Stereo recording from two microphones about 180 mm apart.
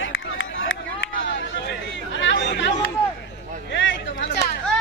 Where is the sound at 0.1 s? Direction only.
90° left.